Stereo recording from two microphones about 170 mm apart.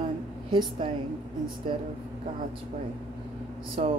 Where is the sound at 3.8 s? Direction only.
35° right (ahead or behind).